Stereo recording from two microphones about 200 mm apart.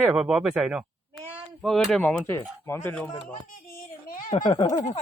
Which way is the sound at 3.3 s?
45° left (ahead or behind).